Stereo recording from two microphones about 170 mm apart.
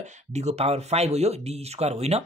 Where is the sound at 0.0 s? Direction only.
40° right (ahead or behind).